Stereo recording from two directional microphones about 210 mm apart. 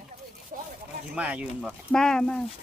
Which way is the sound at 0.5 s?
40° right (ahead or behind).